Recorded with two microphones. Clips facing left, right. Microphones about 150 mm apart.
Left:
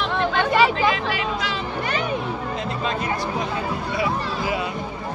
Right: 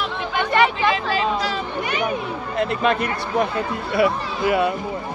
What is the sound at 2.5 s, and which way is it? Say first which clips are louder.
Speech: right 10 dB; 65° right (ahead or behind).